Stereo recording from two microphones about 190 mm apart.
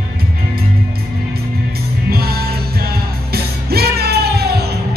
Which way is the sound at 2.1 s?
55° right (ahead or behind).